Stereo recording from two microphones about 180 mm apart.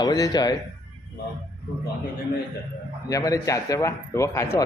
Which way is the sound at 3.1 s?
20° left (ahead or behind).